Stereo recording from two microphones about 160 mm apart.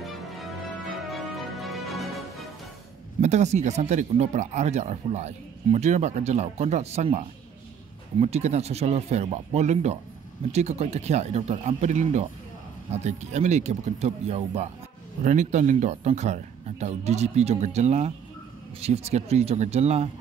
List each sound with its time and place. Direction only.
1.0 s music: centre (ahead or behind)
3.2 s speech: 45° right (ahead or behind)